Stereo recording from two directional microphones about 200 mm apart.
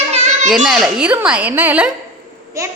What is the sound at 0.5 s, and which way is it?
A child's voice, centre (ahead or behind).